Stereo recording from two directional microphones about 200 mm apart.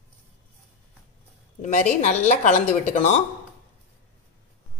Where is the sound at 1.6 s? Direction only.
35° left (ahead or behind).